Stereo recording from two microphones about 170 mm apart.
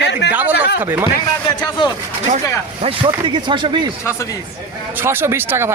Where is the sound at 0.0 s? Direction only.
90° left.